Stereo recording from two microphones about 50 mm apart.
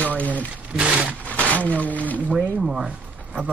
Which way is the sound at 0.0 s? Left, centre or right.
Left.